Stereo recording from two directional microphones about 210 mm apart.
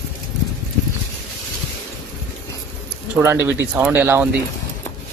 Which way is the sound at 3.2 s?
10° right (ahead or behind).